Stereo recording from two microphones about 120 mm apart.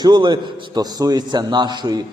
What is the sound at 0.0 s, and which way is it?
A man's voice, 40° right (ahead or behind).